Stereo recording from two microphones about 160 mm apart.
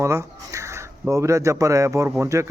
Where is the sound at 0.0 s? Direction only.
20° right (ahead or behind).